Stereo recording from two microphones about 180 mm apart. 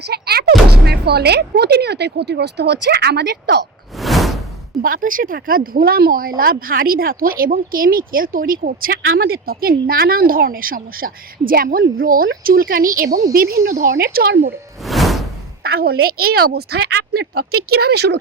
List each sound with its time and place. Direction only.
0.0 s speech: 65° right (ahead or behind)
3.9 s whoosh: centre (ahead or behind)
4.8 s speech: 50° right (ahead or behind)
14.8 s whoosh: centre (ahead or behind)
15.6 s speech: 60° right (ahead or behind)